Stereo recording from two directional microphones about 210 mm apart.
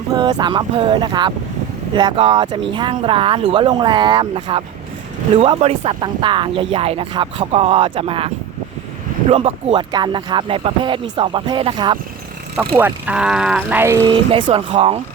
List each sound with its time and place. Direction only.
0.1 s speech: 20° right (ahead or behind)
9.3 s speech: 25° right (ahead or behind)
12.5 s speech: 10° right (ahead or behind)
14.1 s speech: 25° right (ahead or behind)